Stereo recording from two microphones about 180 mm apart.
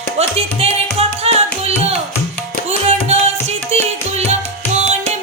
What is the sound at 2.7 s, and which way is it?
Music, 35° right (ahead or behind).